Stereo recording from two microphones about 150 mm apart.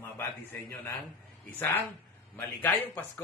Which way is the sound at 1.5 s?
15° left (ahead or behind).